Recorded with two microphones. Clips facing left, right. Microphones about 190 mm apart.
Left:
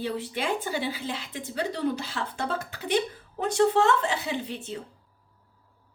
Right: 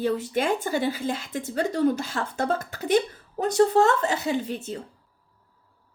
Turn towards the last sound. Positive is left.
turn(degrees=-45)  # may be behind; listen again after turning